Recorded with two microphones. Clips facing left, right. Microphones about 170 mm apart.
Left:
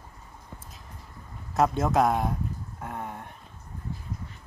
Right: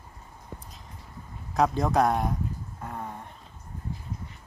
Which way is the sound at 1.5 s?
Centre (ahead or behind).